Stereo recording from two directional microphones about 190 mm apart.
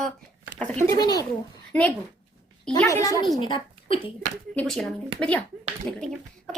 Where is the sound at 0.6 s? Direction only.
5° left (ahead or behind).